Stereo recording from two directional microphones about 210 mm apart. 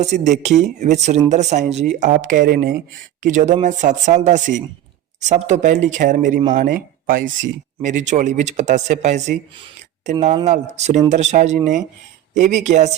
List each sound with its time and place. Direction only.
0.0 s speech: 35° right (ahead or behind)